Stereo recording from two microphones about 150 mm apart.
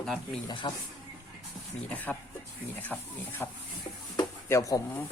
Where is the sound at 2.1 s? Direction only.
10° left (ahead or behind).